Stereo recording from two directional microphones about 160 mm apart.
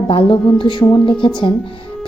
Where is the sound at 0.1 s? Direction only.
35° left (ahead or behind).